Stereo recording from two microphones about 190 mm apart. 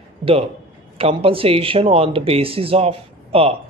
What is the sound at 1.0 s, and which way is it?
Speech, 30° right (ahead or behind).